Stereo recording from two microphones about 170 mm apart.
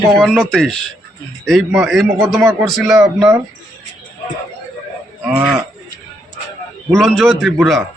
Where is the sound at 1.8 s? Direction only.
Centre (ahead or behind).